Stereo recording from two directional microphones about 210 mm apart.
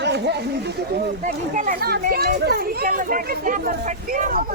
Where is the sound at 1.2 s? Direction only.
40° right (ahead or behind).